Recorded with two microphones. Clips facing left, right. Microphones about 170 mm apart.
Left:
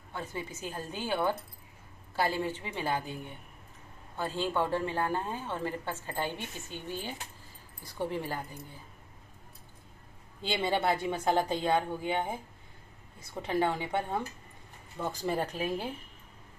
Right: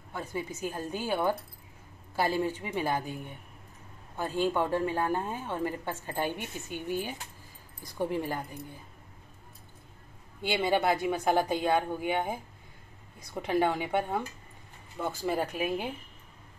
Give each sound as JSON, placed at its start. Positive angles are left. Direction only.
{"t": 0.1, "sound": "a woman's voice", "side_deg": -10}
{"t": 4.2, "sound": "a woman's voice", "side_deg": -15}
{"t": 10.4, "sound": "a woman's voice", "side_deg": -10}